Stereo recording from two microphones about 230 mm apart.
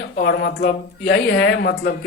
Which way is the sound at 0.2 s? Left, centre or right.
Left.